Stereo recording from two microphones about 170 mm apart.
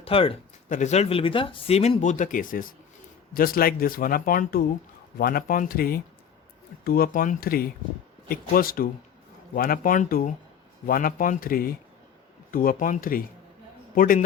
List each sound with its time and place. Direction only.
0.0 s speech: 35° left (ahead or behind)
0.7 s speech: 45° left (ahead or behind)